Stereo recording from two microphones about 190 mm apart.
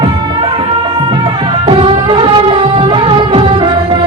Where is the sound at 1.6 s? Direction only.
30° right (ahead or behind).